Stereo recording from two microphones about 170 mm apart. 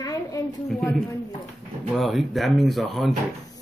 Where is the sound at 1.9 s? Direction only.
Centre (ahead or behind).